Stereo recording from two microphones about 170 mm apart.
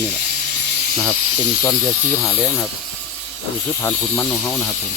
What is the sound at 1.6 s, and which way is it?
Speech, 15° left (ahead or behind).